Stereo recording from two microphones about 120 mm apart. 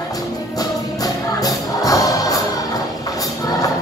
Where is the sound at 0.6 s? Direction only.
30° left (ahead or behind).